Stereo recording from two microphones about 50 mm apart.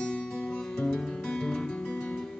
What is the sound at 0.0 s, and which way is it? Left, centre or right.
Music, centre.